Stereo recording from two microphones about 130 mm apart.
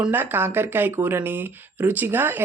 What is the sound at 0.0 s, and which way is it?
Speech, 15° right (ahead or behind).